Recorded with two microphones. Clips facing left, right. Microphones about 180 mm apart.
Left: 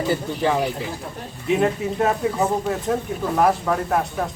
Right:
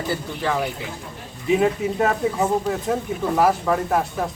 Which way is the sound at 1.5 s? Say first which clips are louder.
Right 1 dB; centre (ahead or behind).